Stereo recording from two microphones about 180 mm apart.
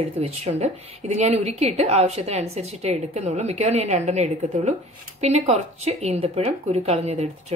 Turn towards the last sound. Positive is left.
turn(degrees=-35)  # may be behind; listen again after turning